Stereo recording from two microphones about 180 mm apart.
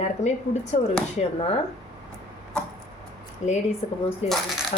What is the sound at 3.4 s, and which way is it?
Speech, 40° left (ahead or behind).